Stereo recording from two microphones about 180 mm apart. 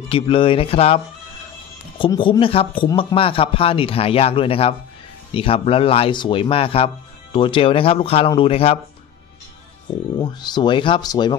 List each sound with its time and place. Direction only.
0.1 s speech: 30° left (ahead or behind)
10.1 s speech: 25° left (ahead or behind)